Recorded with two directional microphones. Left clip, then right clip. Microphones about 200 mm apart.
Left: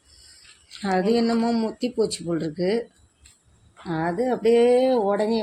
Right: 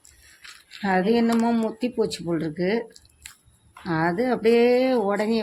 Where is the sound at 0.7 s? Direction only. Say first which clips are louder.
Even; 15° right (ahead or behind).